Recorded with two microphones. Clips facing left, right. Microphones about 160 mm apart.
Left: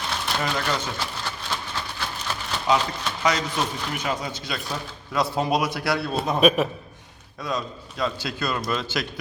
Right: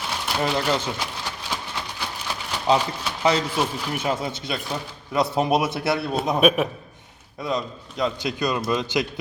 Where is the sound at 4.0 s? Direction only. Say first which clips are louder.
Right 4 dB; 25° right (ahead or behind).